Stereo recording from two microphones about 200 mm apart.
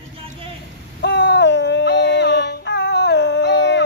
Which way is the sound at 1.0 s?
60° left (ahead or behind).